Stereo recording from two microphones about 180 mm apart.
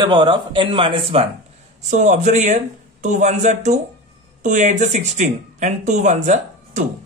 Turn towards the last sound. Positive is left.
turn(degrees=-40)  # may be behind; listen again after turning